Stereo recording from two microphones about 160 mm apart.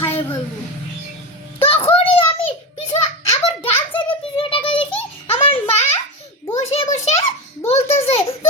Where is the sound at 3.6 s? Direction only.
35° left (ahead or behind).